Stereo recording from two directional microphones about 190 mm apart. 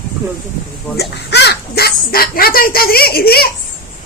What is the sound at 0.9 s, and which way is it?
Speech, 60° left (ahead or behind).